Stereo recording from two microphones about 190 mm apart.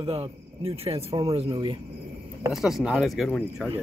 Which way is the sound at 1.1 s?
20° right (ahead or behind).